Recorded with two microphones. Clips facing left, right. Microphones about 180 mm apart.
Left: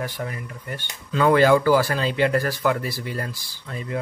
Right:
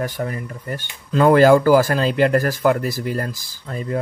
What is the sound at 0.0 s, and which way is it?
Speech, 45° right (ahead or behind).